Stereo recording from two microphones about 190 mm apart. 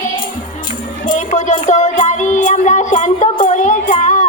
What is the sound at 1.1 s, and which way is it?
Music, 40° left (ahead or behind).